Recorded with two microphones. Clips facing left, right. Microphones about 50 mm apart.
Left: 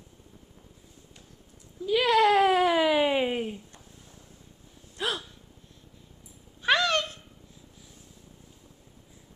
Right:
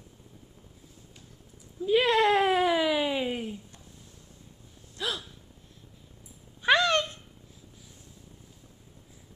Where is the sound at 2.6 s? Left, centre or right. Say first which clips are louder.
Left 2 dB; centre.